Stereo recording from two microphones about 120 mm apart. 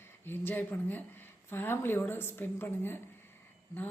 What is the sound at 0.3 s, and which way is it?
A woman's voice, 15° left (ahead or behind).